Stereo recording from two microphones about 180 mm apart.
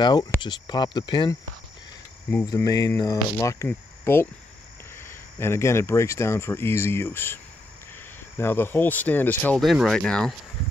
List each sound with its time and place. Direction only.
0.0 s speech: 25° left (ahead or behind)
2.4 s speech: 20° left (ahead or behind)
8.4 s speech: 10° left (ahead or behind)